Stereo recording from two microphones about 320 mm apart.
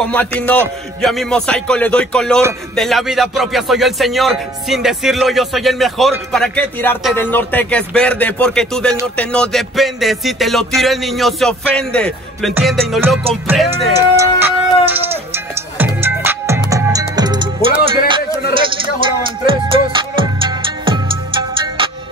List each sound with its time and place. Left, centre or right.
0.0 s music: centre
17.8 s speech: centre
19.9 s music: centre